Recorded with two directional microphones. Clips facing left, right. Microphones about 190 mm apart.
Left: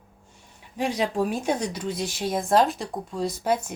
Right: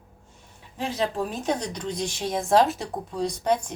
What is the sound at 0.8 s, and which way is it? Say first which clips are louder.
Speech: left 2 dB; 15° left (ahead or behind).